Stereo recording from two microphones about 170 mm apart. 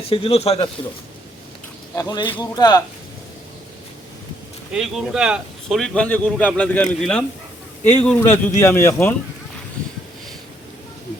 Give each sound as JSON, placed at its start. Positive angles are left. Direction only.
{"t": 0.1, "sound": "speech", "side_deg": 35}
{"t": 2.0, "sound": "a man's voice", "side_deg": 25}
{"t": 4.7, "sound": "a man's voice", "side_deg": 0}